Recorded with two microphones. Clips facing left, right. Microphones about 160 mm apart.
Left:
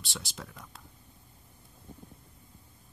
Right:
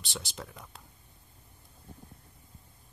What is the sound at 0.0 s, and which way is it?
Speech, centre (ahead or behind).